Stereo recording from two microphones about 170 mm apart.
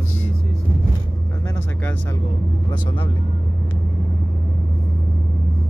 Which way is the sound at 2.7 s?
30° left (ahead or behind).